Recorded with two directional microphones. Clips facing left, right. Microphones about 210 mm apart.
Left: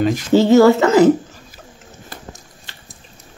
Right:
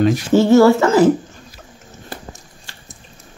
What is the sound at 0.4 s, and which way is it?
Speech, 20° left (ahead or behind).